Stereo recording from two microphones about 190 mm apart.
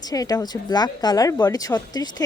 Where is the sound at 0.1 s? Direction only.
20° left (ahead or behind).